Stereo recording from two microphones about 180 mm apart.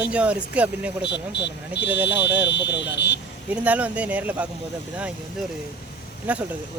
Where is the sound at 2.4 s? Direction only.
75° left (ahead or behind).